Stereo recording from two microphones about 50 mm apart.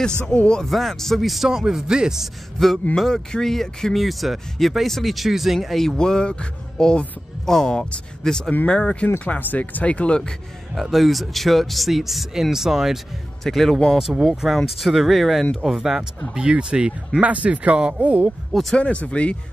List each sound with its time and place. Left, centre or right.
0.3 s speech: centre
0.7 s speech: centre
2.6 s speech: centre
9.4 s speech: left; by 10.3 s centre
10.7 s speech: centre
14.1 s speech: centre
16.3 s speech: centre
18.5 s speech: centre
18.8 s speech: left